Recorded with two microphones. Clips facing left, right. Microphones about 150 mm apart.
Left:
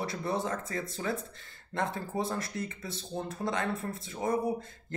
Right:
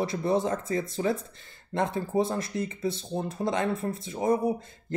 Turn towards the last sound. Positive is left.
turn(degrees=-15)  # may be behind; listen again after turning